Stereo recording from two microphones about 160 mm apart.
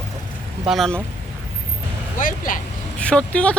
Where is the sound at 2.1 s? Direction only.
55° left (ahead or behind).